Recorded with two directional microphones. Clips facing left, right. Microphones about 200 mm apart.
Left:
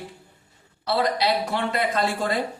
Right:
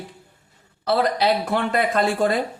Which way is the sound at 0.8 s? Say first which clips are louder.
Right 3 dB; 50° right (ahead or behind).